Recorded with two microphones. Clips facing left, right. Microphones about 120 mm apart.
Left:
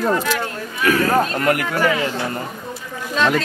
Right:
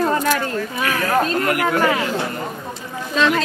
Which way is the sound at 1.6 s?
40° right (ahead or behind).